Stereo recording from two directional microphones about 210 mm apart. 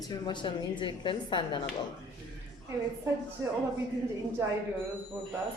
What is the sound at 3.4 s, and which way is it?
Speech, 15° right (ahead or behind).